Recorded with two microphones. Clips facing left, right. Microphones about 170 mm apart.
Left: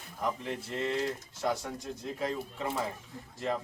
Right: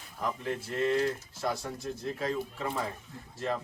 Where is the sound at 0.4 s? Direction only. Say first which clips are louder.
Right 4 dB; 20° left (ahead or behind).